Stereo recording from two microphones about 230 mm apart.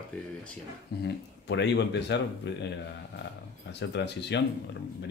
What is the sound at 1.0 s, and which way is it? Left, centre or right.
Speech, left.